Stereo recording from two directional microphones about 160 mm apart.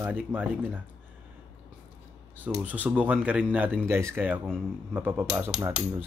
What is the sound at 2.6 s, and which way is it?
Speech, 10° right (ahead or behind).